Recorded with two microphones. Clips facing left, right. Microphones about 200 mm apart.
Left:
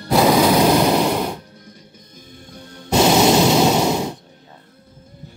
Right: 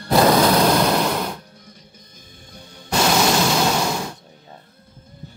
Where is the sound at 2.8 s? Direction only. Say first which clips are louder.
Left 5 dB; 20° left (ahead or behind).